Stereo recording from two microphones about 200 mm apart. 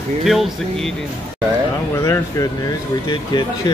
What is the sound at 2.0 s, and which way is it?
Speech, 15° left (ahead or behind).